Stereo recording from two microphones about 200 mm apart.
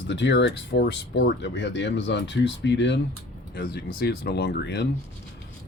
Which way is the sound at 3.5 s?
50° left (ahead or behind).